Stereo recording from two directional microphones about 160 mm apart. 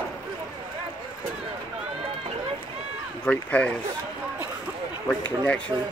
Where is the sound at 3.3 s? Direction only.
10° left (ahead or behind).